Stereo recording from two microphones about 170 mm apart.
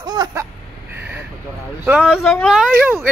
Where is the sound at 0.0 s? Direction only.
25° right (ahead or behind).